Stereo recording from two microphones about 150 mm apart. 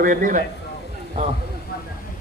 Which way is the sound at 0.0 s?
65° right (ahead or behind).